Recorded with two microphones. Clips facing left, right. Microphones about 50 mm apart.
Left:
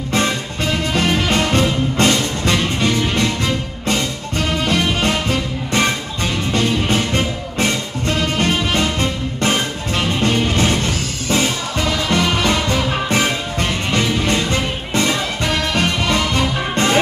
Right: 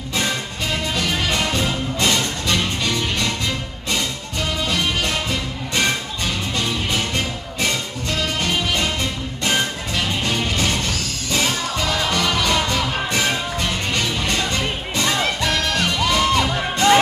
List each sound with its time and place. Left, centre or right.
0.9 s music: left
2.1 s music: left
8.4 s music: left